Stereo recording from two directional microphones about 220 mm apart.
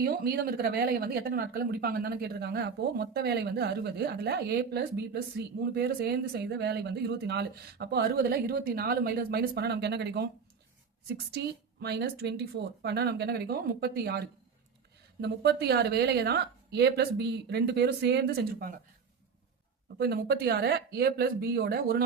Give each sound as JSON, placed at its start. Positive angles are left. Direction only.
{"t": 0.0, "sound": "speech", "side_deg": -45}
{"t": 11.3, "sound": "speech", "side_deg": -50}
{"t": 20.0, "sound": "speech", "side_deg": -45}